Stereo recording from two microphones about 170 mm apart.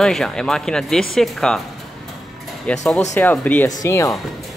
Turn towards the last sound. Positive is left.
turn(degrees=20)  # may be behind; listen again after turning